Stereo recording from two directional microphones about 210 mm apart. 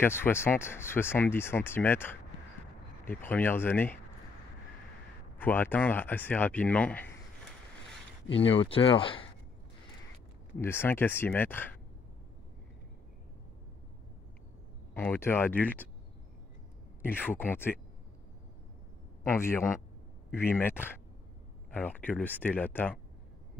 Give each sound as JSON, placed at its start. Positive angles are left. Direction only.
{"t": 0.0, "sound": "speech", "side_deg": 10}
{"t": 5.4, "sound": "speech", "side_deg": 10}
{"t": 8.5, "sound": "speech", "side_deg": 25}
{"t": 10.6, "sound": "speech", "side_deg": 10}
{"t": 15.0, "sound": "speech", "side_deg": 10}
{"t": 17.0, "sound": "speech", "side_deg": 10}
{"t": 19.3, "sound": "speech", "side_deg": 10}